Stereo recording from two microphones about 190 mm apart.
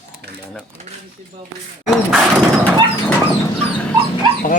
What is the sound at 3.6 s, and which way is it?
Speech, 5° left (ahead or behind).